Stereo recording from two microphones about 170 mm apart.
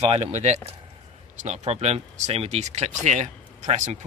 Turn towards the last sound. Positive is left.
turn(degrees=-45)  # may be behind; listen again after turning